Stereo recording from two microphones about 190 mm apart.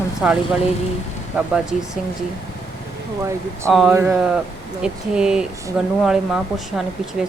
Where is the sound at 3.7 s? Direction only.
Centre (ahead or behind).